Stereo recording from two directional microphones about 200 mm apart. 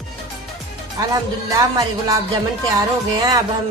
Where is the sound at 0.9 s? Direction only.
15° right (ahead or behind).